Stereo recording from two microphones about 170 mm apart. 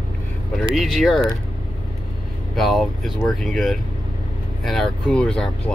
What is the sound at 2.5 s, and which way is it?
Speech, centre (ahead or behind).